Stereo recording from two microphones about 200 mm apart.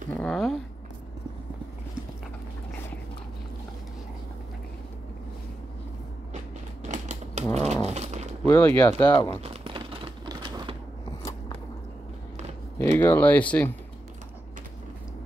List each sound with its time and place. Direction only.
0.2 s zipper: centre (ahead or behind)
6.8 s typewriter: 35° right (ahead or behind)
7.7 s dog: 35° right (ahead or behind)
8.5 s speech: 10° left (ahead or behind)
9.0 s speech: 20° left (ahead or behind)
9.4 s typewriter: 30° right (ahead or behind)
12.7 s speech: 10° left (ahead or behind)